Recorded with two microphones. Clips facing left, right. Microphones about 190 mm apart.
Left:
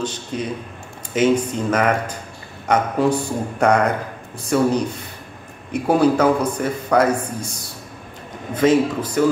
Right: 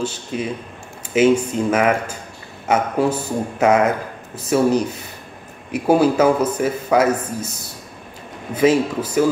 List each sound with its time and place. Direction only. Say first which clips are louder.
0.3 s a man's voice: right 1 dB; 10° right (ahead or behind)
8.5 s speech: even; 5° right (ahead or behind)